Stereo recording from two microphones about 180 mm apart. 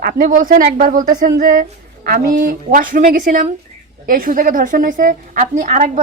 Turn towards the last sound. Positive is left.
turn(degrees=-45)  # may be behind; listen again after turning